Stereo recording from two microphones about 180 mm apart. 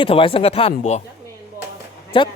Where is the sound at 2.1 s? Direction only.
30° left (ahead or behind).